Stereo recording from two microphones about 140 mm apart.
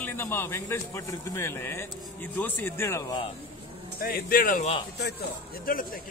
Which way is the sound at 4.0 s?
90° left.